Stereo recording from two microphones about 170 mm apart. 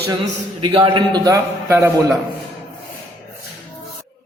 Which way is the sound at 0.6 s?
30° right (ahead or behind).